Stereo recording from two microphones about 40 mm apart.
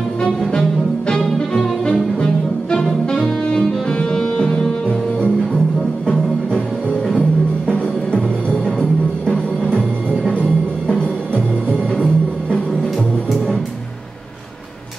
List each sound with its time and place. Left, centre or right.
0.2 s music: centre
7.7 s music: left
10.3 s music: left